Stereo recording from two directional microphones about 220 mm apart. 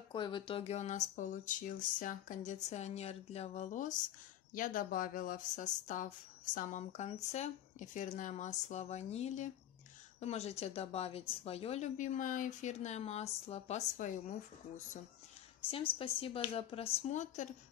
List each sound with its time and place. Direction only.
0.1 s a woman's voice: 20° left (ahead or behind)
15.7 s a woman's voice: 25° left (ahead or behind)